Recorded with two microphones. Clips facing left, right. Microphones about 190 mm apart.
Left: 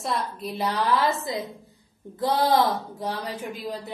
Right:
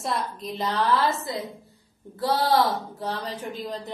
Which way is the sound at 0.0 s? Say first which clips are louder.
Even; 5° left (ahead or behind).